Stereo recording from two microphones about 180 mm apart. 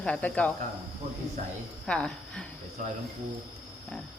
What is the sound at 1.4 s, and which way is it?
Speech, 45° right (ahead or behind).